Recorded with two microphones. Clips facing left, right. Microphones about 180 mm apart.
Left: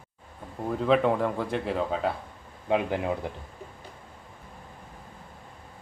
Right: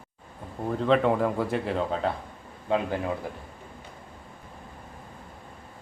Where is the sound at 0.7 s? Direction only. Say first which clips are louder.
Even; 5° left (ahead or behind).